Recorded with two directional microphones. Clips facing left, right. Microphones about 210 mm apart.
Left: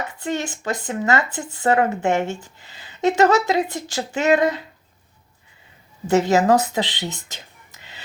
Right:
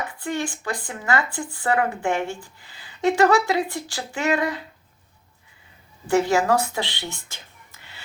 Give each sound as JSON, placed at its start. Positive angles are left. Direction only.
{"t": 0.2, "sound": "speech", "side_deg": 20}
{"t": 6.1, "sound": "speech", "side_deg": 20}